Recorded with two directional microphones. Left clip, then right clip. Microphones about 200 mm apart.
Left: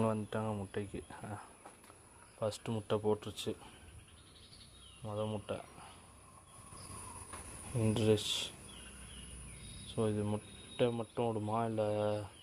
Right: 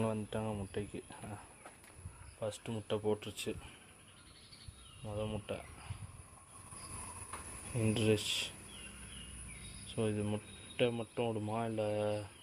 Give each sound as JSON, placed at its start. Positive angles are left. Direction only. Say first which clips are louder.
{"t": 0.0, "sound": "speech", "louder": "left 2 dB", "side_deg": 5}
{"t": 2.4, "sound": "speech", "louder": "left 3 dB", "side_deg": 20}
{"t": 5.0, "sound": "speech", "louder": "left 2 dB", "side_deg": 10}
{"t": 7.9, "sound": "speech", "louder": "left 1 dB", "side_deg": 10}
{"t": 8.1, "sound": "speech", "louder": "left 1 dB", "side_deg": 45}
{"t": 9.9, "sound": "speech", "louder": "left 1 dB", "side_deg": 5}